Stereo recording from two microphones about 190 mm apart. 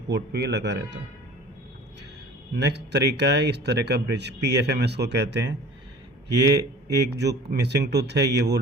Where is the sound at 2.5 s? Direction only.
60° right (ahead or behind).